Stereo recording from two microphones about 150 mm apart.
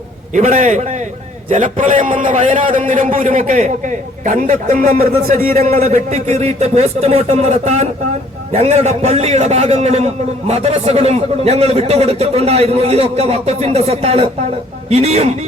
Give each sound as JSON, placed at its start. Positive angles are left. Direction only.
{"t": 0.3, "sound": "a man's voice", "side_deg": -50}
{"t": 5.8, "sound": "a man's voice", "side_deg": -50}